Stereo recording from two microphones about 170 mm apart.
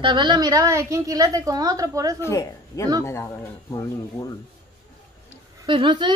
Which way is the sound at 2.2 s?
20° left (ahead or behind).